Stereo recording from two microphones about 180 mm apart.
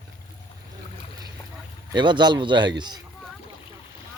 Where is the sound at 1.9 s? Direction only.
25° right (ahead or behind).